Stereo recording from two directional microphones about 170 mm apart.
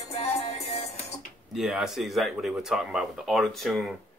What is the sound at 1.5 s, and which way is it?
Speech, centre (ahead or behind).